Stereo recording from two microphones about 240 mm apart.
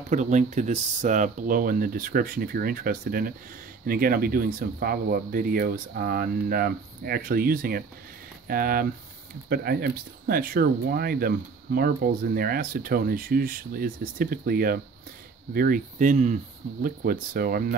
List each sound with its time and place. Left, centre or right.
0.1 s speech: right